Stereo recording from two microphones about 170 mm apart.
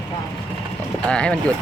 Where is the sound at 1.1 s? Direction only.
5° left (ahead or behind).